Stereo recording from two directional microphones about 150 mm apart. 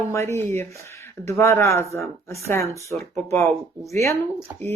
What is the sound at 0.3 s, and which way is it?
Speech, 15° left (ahead or behind).